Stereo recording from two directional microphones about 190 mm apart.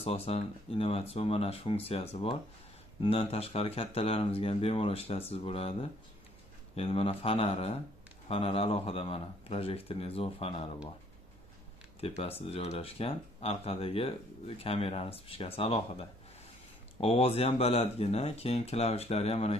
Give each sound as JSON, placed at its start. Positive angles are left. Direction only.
{"t": 0.0, "sound": "speech", "side_deg": 30}
{"t": 12.2, "sound": "speech", "side_deg": 30}